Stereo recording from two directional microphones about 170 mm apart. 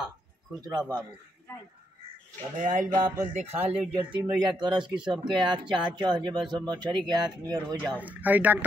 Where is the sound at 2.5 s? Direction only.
50° right (ahead or behind).